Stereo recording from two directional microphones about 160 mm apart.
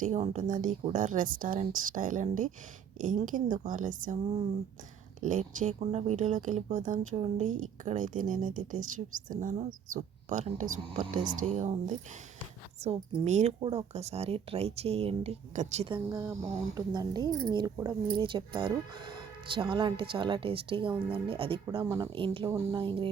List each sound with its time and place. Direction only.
0.0 s a woman's voice: 50° right (ahead or behind)
5.2 s speech: 50° right (ahead or behind)
16.0 s a woman's voice: 15° right (ahead or behind); by 22.4 s 35° right (ahead or behind)
22.4 s a woman's voice: 20° right (ahead or behind)
22.8 s speech: 35° right (ahead or behind)